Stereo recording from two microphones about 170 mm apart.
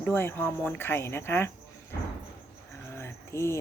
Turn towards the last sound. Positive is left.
turn(degrees=15)  # may be behind; listen again after turning